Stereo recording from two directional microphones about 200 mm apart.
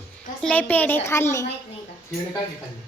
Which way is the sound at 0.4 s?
10° left (ahead or behind).